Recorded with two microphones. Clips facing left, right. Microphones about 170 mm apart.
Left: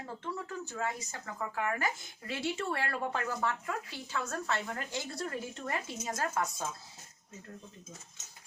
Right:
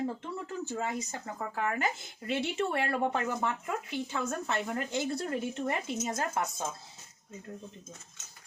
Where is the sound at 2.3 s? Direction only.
20° right (ahead or behind).